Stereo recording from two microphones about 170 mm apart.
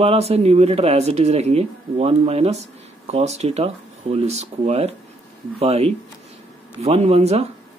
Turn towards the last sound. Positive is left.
turn(degrees=-40)  # may be behind; listen again after turning